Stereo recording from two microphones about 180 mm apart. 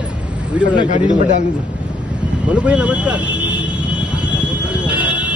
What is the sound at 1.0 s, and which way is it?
Speech, 45° right (ahead or behind).